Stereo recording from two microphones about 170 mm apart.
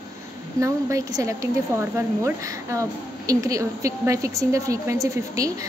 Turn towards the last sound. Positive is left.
turn(degrees=-20)  # may be behind; listen again after turning